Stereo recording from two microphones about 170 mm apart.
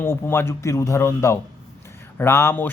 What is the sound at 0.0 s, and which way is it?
Speech, 15° left (ahead or behind).